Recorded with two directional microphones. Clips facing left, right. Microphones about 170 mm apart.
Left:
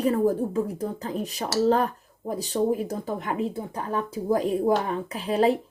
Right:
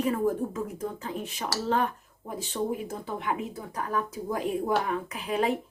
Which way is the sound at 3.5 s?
25° left (ahead or behind).